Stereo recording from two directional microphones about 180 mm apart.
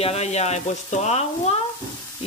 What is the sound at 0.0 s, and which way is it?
Speech, 35° left (ahead or behind).